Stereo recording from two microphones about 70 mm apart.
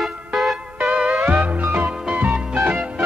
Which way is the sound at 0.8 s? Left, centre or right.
Centre.